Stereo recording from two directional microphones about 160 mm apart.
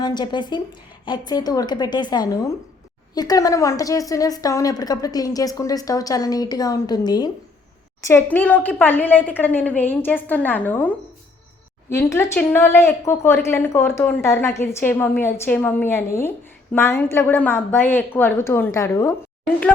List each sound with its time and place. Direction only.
0.0 s a woman's voice: 25° left (ahead or behind)
8.0 s a woman's voice: 15° left (ahead or behind)